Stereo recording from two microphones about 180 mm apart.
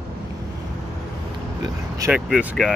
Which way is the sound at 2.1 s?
5° right (ahead or behind).